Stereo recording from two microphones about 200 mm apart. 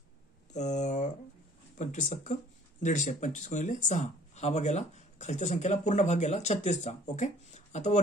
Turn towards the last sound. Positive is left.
turn(degrees=35)  # may be behind; listen again after turning